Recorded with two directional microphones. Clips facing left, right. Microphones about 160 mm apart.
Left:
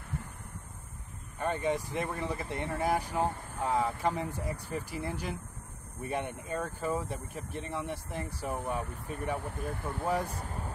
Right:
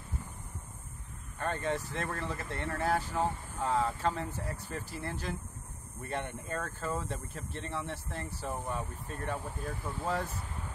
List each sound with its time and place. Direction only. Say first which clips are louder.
1.4 s speech: left 3 dB; 15° left (ahead or behind)
9.4 s speech: left 2 dB; 60° left (ahead or behind)
10.0 s speech: left 3 dB; 15° left (ahead or behind)